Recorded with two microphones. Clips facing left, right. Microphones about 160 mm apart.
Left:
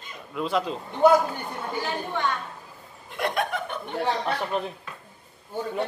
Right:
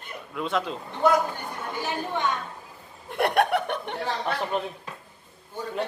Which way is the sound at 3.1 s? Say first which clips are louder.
Right 5 dB; 65° right (ahead or behind).